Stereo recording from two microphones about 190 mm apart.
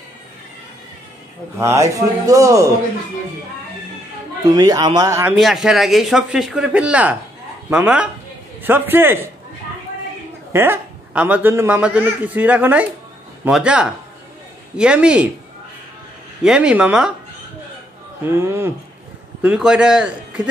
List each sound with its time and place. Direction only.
1.6 s a man's voice: 15° right (ahead or behind)
4.6 s a man's voice: 20° right (ahead or behind)
5.4 s a man's voice: centre (ahead or behind)
10.5 s a man's voice: 10° right (ahead or behind)
16.4 s speech: 5° right (ahead or behind)
18.3 s a man's voice: 15° right (ahead or behind)